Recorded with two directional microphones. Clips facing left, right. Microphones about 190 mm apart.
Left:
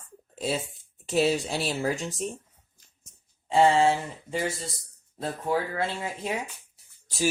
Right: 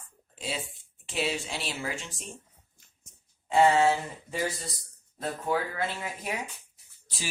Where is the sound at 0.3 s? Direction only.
40° left (ahead or behind).